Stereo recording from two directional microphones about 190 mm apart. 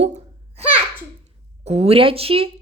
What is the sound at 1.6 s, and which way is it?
Speech, 35° right (ahead or behind).